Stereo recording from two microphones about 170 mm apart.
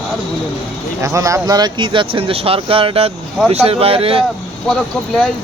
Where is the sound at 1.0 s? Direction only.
20° right (ahead or behind); by 4.2 s 35° right (ahead or behind).